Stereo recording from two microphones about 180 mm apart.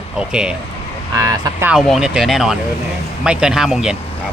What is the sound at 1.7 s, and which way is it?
Speech, centre (ahead or behind).